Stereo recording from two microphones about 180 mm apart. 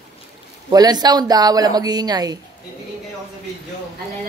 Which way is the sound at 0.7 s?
20° right (ahead or behind).